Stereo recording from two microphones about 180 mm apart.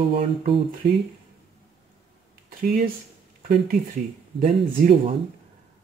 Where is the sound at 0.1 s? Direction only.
30° right (ahead or behind).